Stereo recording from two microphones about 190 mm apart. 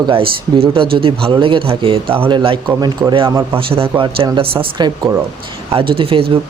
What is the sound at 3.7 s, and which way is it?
Speech, 30° right (ahead or behind).